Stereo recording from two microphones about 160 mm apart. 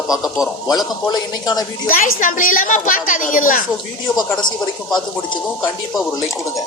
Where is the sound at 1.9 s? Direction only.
65° left (ahead or behind).